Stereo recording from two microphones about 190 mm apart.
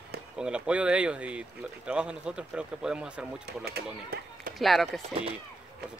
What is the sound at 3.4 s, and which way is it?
Speech, 55° right (ahead or behind).